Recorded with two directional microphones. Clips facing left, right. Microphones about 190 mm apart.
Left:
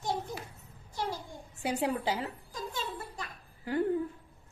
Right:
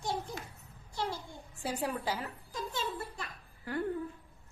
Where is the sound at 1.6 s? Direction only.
20° left (ahead or behind).